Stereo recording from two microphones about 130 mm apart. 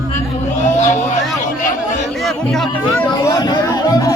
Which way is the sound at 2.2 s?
Centre (ahead or behind).